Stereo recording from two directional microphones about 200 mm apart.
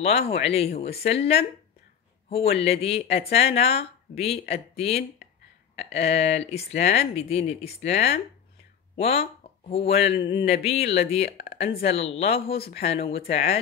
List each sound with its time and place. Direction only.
0.0 s speech: 30° left (ahead or behind)